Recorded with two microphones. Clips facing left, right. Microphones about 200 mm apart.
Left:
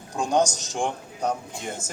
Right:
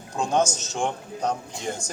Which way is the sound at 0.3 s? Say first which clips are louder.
Left 1 dB; 15° left (ahead or behind).